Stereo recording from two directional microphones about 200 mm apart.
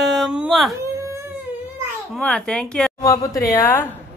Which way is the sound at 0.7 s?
15° right (ahead or behind).